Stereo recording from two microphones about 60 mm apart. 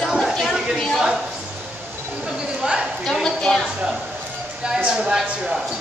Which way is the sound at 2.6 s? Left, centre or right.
Centre.